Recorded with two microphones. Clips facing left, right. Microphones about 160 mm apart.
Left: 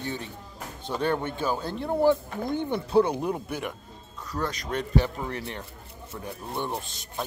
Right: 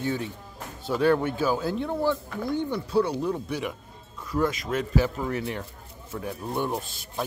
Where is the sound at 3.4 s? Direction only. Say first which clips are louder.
Right 2 dB; centre (ahead or behind).